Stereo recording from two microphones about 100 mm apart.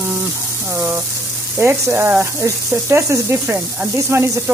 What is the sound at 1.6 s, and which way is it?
Speech, 25° right (ahead or behind).